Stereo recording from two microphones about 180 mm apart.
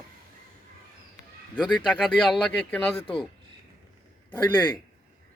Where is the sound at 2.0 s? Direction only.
Centre (ahead or behind).